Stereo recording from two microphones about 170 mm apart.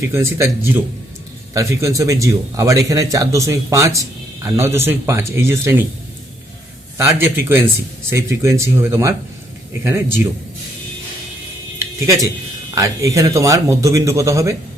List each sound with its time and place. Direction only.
0.0 s speech: 15° right (ahead or behind)
6.9 s speech: 15° right (ahead or behind)
11.9 s speech: 20° right (ahead or behind)